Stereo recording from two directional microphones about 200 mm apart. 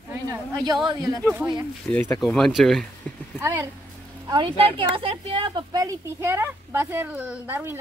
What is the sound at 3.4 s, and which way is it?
Speech, 15° right (ahead or behind).